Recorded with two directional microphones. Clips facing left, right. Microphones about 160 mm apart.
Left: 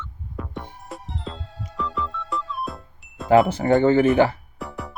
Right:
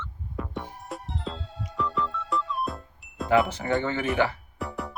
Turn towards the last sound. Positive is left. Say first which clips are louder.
# even
turn(degrees=0)  # may be behind; listen again after turning